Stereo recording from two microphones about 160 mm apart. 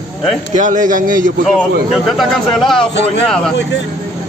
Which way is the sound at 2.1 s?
Centre (ahead or behind).